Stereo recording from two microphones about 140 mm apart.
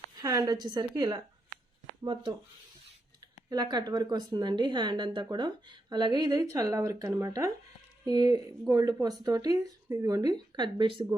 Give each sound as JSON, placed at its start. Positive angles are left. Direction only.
{"t": 0.2, "sound": "speech", "side_deg": -25}
{"t": 3.5, "sound": "a woman's voice", "side_deg": -30}